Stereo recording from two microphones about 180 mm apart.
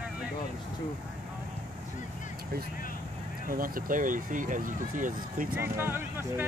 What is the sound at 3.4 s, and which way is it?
Speech, 50° right (ahead or behind).